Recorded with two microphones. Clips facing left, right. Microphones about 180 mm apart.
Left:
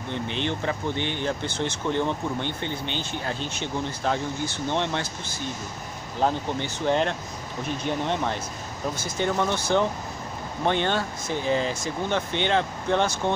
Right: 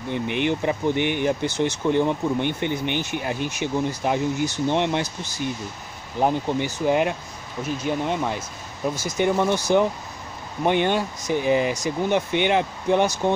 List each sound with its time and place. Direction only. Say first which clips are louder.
0.1 s speech: right 5 dB; 15° right (ahead or behind)
5.0 s speech: right 3 dB; 55° left (ahead or behind)
6.1 s speech: right 3 dB; 15° right (ahead or behind)
10.6 s speech: right 4 dB; 15° right (ahead or behind)